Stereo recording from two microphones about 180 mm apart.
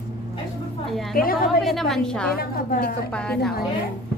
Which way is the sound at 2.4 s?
55° left (ahead or behind).